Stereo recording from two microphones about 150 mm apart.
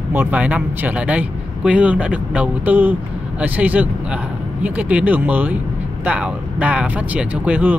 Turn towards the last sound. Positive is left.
turn(degrees=-10)  # may be behind; listen again after turning